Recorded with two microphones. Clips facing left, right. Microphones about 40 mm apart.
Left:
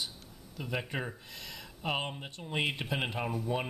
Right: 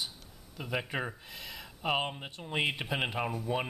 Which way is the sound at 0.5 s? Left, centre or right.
Centre.